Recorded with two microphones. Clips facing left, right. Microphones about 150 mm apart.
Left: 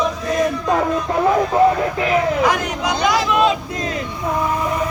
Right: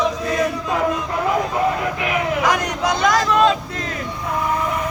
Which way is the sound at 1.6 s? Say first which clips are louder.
Left 8 dB; 30° left (ahead or behind).